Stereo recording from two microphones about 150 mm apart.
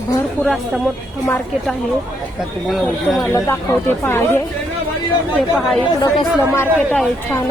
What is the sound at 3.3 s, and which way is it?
Speech, 15° left (ahead or behind).